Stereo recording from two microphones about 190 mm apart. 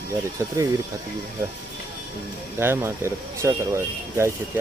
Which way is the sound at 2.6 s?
15° right (ahead or behind).